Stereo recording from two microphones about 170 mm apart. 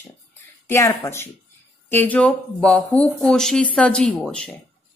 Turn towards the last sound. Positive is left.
turn(degrees=5)  # may be behind; listen again after turning